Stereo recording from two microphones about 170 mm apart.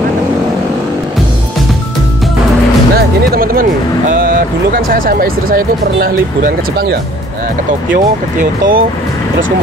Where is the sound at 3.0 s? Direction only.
60° right (ahead or behind).